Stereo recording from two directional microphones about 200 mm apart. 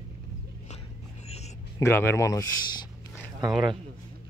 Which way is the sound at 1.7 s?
15° left (ahead or behind).